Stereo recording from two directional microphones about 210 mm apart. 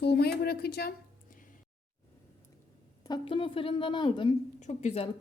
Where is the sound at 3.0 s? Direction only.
20° left (ahead or behind).